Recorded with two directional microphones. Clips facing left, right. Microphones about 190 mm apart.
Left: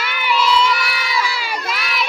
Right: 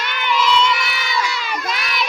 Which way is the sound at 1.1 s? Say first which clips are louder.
Even; 10° left (ahead or behind).